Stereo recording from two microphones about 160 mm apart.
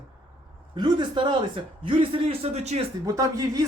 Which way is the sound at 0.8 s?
30° right (ahead or behind).